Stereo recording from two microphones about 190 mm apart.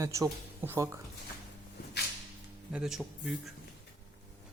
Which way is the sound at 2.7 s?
5° right (ahead or behind).